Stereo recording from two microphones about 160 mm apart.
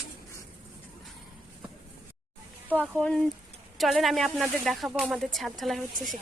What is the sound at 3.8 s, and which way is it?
Speech, centre (ahead or behind).